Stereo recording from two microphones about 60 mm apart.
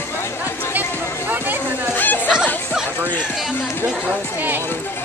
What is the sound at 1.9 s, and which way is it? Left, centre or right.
Chatter, left.